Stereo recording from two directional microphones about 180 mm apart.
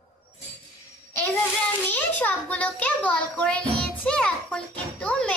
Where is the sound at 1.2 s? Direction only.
10° left (ahead or behind).